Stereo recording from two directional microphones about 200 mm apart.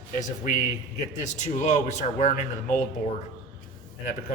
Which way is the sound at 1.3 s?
35° left (ahead or behind).